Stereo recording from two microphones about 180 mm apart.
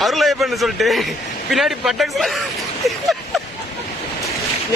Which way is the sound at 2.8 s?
Centre (ahead or behind).